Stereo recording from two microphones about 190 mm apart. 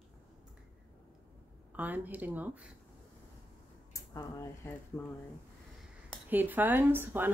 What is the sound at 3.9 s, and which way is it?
Speech, 15° left (ahead or behind).